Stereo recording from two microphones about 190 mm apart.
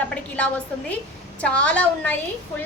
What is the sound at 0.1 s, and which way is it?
A woman's voice, 5° left (ahead or behind).